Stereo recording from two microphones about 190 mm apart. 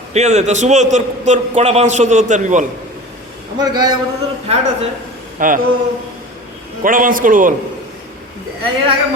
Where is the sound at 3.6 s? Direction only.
20° right (ahead or behind).